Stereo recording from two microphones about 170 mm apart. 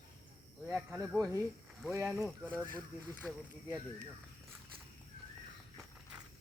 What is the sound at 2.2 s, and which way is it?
Speech, 5° left (ahead or behind).